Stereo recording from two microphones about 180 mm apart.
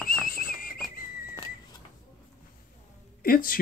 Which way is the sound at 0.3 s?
55° left (ahead or behind).